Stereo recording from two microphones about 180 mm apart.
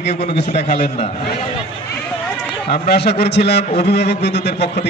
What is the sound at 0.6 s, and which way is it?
Speech, 40° left (ahead or behind).